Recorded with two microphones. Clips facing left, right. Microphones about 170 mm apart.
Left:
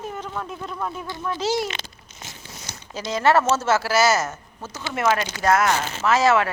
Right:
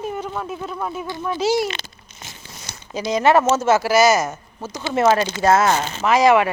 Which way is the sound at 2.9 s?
15° right (ahead or behind).